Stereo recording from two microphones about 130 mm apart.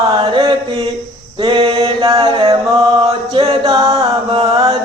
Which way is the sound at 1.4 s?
40° right (ahead or behind).